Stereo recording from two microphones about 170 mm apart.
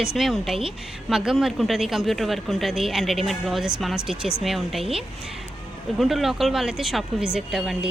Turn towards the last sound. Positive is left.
turn(degrees=0)  # may be behind; listen again after turning